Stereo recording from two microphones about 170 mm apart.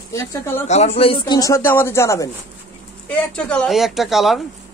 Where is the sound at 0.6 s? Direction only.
40° left (ahead or behind).